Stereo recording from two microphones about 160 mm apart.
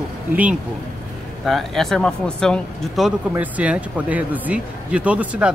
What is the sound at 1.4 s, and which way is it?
Speech, centre (ahead or behind).